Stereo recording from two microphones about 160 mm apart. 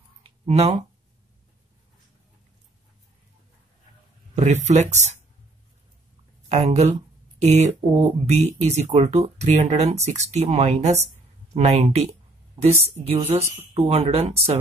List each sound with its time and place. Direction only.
0.5 s a woman's voice: 40° right (ahead or behind)
4.4 s speech: 45° right (ahead or behind)
6.5 s a woman's voice: 40° right (ahead or behind)